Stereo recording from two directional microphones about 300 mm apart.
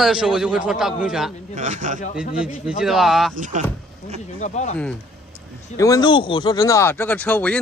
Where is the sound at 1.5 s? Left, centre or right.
Right.